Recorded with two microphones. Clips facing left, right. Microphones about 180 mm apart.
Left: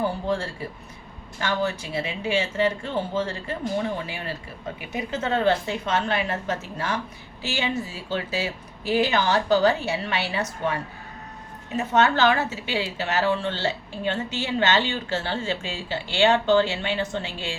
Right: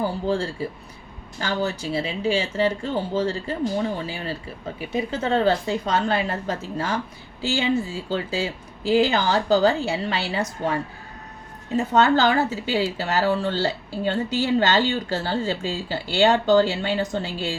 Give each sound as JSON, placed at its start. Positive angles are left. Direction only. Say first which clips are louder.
{"t": 0.3, "sound": "a woman's voice", "louder": "right 3 dB", "side_deg": -30}
{"t": 11.8, "sound": "a woman's voice", "louder": "right 2 dB", "side_deg": -35}